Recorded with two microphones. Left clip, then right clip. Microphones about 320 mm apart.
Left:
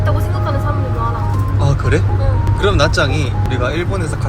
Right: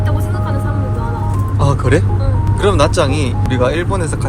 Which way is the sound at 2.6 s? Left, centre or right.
Right.